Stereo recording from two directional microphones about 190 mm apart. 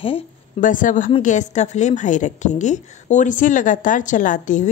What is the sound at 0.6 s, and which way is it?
A woman's voice, 45° left (ahead or behind).